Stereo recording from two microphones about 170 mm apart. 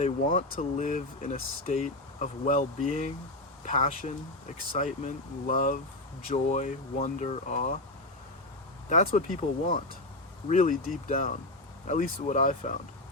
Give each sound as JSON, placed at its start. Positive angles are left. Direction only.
{"t": 0.0, "sound": "speech", "side_deg": 45}
{"t": 8.9, "sound": "speech", "side_deg": 45}